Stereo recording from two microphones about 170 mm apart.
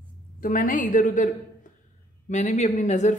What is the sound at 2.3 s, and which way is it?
Speech, 45° left (ahead or behind).